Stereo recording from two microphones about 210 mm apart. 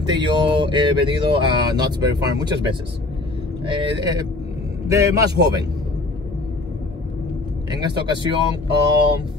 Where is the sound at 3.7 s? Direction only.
20° right (ahead or behind).